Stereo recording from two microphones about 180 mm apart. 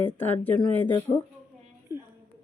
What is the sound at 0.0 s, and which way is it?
Speech, 10° left (ahead or behind).